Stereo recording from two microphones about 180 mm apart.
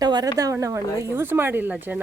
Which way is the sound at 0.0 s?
20° right (ahead or behind).